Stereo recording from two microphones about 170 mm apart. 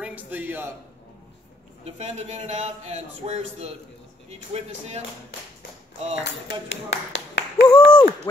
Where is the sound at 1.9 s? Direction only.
40° right (ahead or behind).